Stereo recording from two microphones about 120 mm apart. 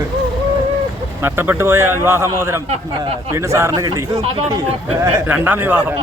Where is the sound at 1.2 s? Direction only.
20° right (ahead or behind).